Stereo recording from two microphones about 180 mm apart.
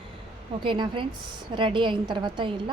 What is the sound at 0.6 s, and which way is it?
A woman's voice, 25° right (ahead or behind).